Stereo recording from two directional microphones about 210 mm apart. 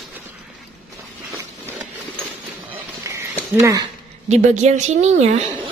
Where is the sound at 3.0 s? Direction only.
15° right (ahead or behind).